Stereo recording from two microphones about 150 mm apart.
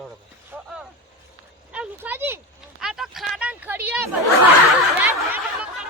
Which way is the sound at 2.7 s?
5° right (ahead or behind).